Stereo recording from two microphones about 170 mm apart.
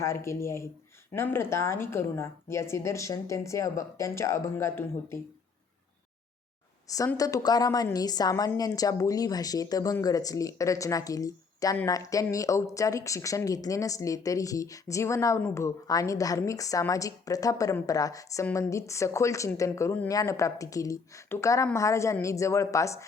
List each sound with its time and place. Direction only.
0.0 s speech: 15° left (ahead or behind)
6.8 s a woman's voice: 20° left (ahead or behind)